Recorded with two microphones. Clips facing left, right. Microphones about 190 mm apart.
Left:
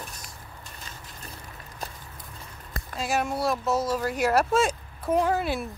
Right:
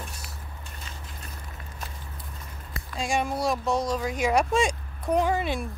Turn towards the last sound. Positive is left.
turn(degrees=0)  # may be behind; listen again after turning